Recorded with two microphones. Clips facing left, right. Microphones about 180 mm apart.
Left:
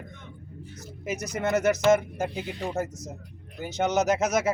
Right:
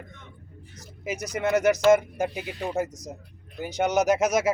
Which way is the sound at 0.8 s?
10° right (ahead or behind).